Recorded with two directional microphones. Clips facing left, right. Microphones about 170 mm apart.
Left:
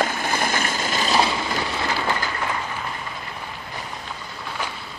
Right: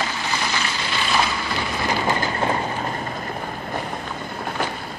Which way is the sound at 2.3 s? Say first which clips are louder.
Right 5 dB; 35° right (ahead or behind).